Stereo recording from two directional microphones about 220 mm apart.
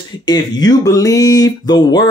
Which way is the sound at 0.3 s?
15° left (ahead or behind).